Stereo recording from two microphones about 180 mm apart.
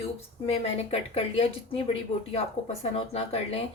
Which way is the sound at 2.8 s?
35° left (ahead or behind).